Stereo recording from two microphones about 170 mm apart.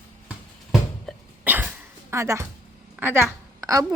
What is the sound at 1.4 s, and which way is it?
Dog, 10° right (ahead or behind).